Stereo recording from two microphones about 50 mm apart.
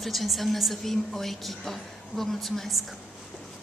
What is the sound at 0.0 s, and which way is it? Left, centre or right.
A woman's voice, centre.